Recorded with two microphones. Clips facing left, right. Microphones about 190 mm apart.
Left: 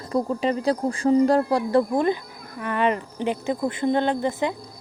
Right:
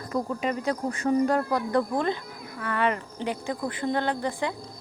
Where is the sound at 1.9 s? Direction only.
15° left (ahead or behind).